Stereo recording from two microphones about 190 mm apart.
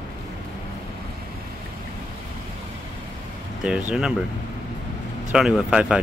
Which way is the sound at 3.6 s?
5° right (ahead or behind).